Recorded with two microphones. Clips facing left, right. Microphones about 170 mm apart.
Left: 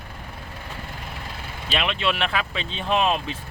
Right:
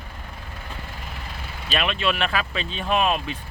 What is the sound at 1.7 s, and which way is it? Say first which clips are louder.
Speech: right 1 dB; 20° left (ahead or behind).